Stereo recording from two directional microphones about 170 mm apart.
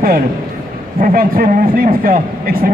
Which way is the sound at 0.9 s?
55° right (ahead or behind).